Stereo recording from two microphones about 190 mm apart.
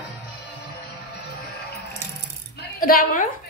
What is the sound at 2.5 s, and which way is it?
Coin, 50° left (ahead or behind).